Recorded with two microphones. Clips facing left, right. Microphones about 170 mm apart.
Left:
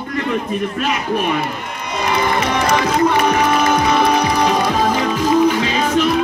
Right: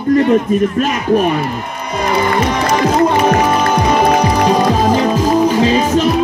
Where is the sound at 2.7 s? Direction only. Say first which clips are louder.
Right 3 dB; 35° right (ahead or behind).